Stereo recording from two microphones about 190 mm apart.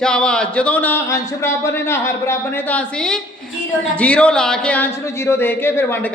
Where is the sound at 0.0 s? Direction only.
5° left (ahead or behind).